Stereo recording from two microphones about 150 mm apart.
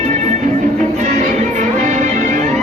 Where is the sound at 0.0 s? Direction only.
50° right (ahead or behind).